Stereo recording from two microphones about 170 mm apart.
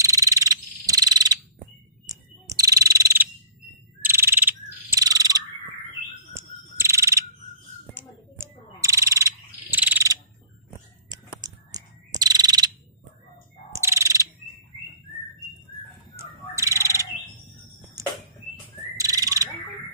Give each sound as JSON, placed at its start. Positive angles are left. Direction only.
{"t": 0.0, "sound": "frog", "side_deg": -20}
{"t": 6.3, "sound": "mechanisms", "side_deg": -15}
{"t": 7.9, "sound": "frog", "side_deg": -15}
{"t": 11.1, "sound": "bird vocalization", "side_deg": -20}
{"t": 13.7, "sound": "bird", "side_deg": -15}
{"t": 16.2, "sound": "bird", "side_deg": -15}
{"t": 18.0, "sound": "a sound", "side_deg": -20}
{"t": 18.9, "sound": "bird", "side_deg": -20}